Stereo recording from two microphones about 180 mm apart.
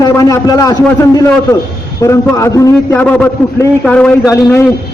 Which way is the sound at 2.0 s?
15° left (ahead or behind).